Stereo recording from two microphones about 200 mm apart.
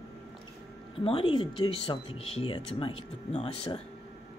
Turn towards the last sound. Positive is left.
turn(degrees=25)  # may be behind; listen again after turning